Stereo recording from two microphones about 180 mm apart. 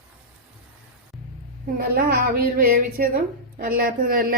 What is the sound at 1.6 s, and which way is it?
A woman's voice, 60° right (ahead or behind).